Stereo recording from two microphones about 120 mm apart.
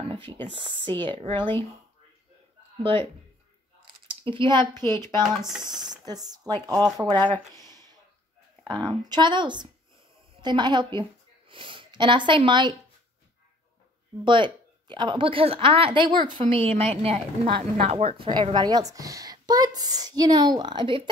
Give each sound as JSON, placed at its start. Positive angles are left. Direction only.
{"t": 0.6, "sound": "a woman's voice", "side_deg": -45}
{"t": 2.8, "sound": "a woman's voice", "side_deg": -50}
{"t": 4.2, "sound": "speech", "side_deg": -45}
{"t": 4.7, "sound": "speech", "side_deg": 20}
{"t": 5.8, "sound": "speech", "side_deg": -35}
{"t": 7.2, "sound": "speech", "side_deg": 10}
{"t": 9.1, "sound": "speech", "side_deg": -40}
{"t": 14.2, "sound": "a woman's voice", "side_deg": -40}